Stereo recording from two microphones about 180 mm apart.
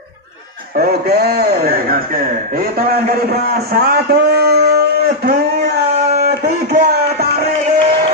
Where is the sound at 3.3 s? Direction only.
60° right (ahead or behind).